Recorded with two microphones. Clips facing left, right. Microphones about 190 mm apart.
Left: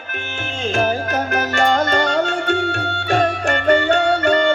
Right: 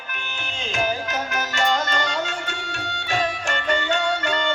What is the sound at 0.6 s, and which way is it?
Music, 50° left (ahead or behind).